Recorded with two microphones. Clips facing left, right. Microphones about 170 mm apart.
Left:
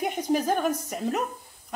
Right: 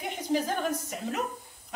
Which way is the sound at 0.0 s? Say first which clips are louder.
Left 4 dB; 50° left (ahead or behind).